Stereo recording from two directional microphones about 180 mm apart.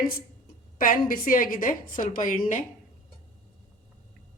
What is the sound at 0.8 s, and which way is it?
A woman's voice, 50° left (ahead or behind).